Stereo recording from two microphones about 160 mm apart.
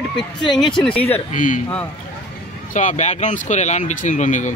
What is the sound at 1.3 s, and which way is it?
Speech, 55° left (ahead or behind).